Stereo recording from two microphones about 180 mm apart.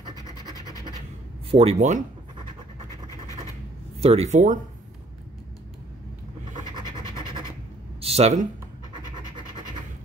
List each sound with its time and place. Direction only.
1.5 s speech: 35° right (ahead or behind)
4.0 s speech: 35° right (ahead or behind)
8.0 s speech: 35° right (ahead or behind)